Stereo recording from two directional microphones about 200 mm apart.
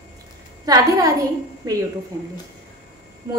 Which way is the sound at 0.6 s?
20° right (ahead or behind).